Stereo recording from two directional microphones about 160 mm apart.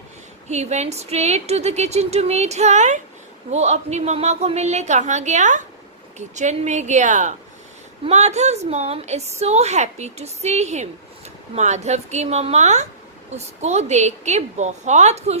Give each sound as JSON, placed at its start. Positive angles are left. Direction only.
{"t": 0.4, "sound": "a woman's voice", "side_deg": -45}